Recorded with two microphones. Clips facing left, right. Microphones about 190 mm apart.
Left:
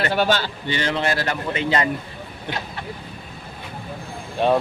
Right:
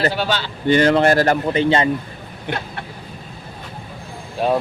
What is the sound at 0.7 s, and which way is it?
Speech, 50° right (ahead or behind).